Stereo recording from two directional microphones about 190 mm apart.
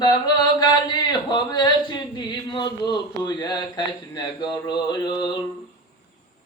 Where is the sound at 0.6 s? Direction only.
20° left (ahead or behind).